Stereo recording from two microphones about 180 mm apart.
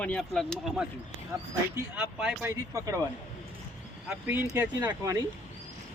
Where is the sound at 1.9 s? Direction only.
5° right (ahead or behind).